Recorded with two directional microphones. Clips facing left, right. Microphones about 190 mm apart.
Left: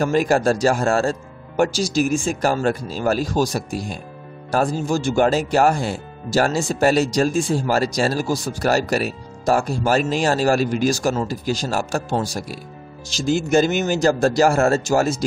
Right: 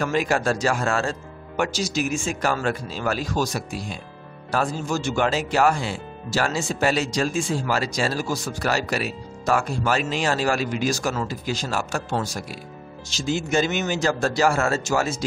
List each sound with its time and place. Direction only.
0.0 s speech: 40° left (ahead or behind)